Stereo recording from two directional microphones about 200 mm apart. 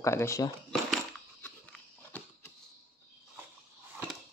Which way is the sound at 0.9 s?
5° left (ahead or behind).